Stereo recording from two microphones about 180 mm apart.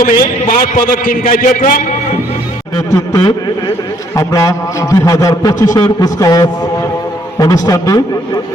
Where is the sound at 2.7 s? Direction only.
20° left (ahead or behind).